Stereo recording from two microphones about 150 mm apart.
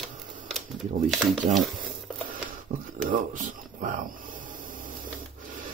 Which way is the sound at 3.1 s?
60° right (ahead or behind).